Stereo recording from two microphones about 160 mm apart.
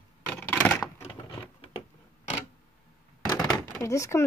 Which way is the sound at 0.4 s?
5° left (ahead or behind).